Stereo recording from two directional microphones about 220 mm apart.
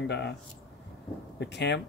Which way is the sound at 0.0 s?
50° left (ahead or behind).